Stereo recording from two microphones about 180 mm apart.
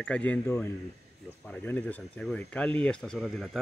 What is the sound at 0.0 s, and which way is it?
Speech, 5° left (ahead or behind).